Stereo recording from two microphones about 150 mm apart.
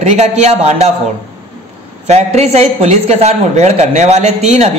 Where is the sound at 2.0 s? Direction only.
45° right (ahead or behind).